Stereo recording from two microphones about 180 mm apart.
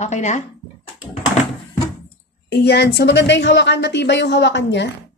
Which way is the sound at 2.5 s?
65° left (ahead or behind).